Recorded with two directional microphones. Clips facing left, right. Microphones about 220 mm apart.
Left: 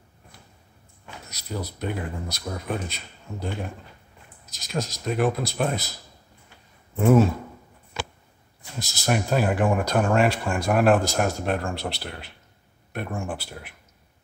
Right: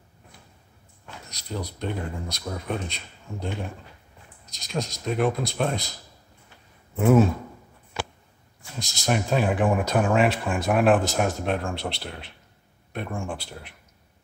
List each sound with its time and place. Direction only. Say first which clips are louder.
1.0 s speech: left 1 dB; 5° left (ahead or behind)
7.0 s speech: even; centre (ahead or behind)
8.7 s speech: left 1 dB; 5° left (ahead or behind)